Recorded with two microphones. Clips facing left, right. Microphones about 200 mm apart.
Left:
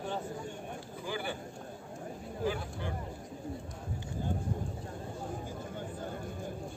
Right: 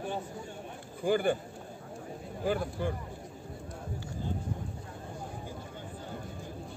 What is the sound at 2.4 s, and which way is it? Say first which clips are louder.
Speech: right 4 dB; 50° right (ahead or behind).